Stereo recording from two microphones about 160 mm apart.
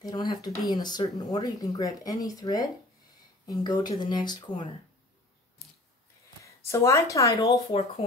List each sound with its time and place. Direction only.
0.0 s speech: 25° left (ahead or behind)
6.4 s a woman's voice: 20° left (ahead or behind)